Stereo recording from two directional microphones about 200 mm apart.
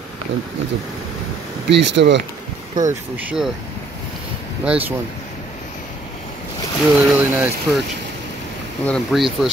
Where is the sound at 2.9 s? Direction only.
10° right (ahead or behind).